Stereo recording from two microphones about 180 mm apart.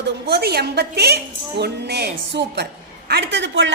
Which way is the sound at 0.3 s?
65° right (ahead or behind).